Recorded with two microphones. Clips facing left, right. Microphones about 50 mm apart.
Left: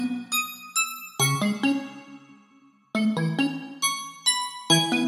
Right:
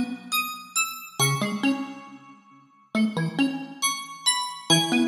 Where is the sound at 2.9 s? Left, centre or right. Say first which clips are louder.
Even; centre.